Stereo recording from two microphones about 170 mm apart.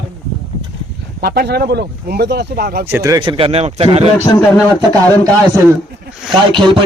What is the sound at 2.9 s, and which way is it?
Speech, 20° right (ahead or behind).